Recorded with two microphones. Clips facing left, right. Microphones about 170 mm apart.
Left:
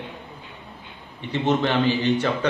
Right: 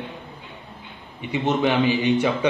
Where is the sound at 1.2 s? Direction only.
10° right (ahead or behind).